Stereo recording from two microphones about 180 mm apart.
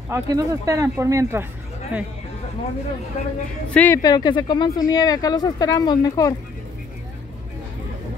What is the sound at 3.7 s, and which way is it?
Speech, 15° left (ahead or behind).